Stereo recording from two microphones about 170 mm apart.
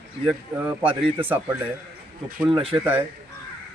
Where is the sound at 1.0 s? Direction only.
30° right (ahead or behind).